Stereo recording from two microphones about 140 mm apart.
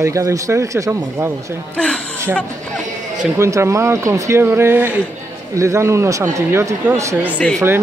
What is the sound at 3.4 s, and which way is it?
Speech, 20° right (ahead or behind).